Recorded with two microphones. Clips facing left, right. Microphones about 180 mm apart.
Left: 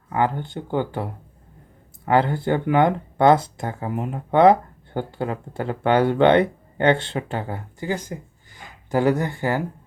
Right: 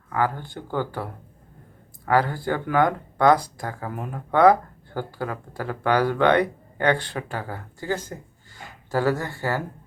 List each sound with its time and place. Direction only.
0.1 s speech: 25° left (ahead or behind)